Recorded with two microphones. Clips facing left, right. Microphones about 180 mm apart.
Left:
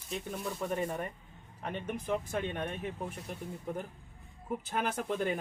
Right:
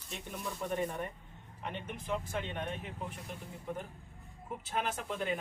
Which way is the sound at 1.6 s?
45° left (ahead or behind).